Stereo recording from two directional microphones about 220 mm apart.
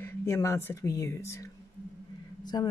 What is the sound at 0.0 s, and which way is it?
Speech, 15° left (ahead or behind).